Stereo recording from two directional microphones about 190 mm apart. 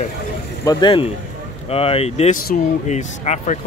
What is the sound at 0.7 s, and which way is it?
Speech, 25° left (ahead or behind).